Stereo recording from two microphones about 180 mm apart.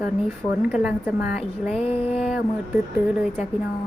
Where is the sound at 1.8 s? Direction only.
35° left (ahead or behind).